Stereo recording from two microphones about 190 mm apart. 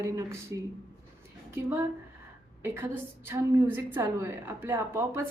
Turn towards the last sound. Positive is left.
turn(degrees=-15)  # may be behind; listen again after turning